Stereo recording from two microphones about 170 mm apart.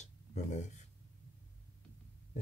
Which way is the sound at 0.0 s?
45° left (ahead or behind).